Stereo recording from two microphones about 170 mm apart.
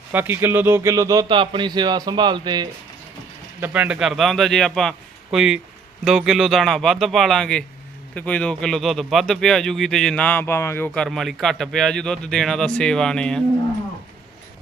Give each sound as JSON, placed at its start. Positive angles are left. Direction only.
{"t": 0.1, "sound": "speech", "side_deg": -10}
{"t": 3.6, "sound": "a man's voice", "side_deg": -10}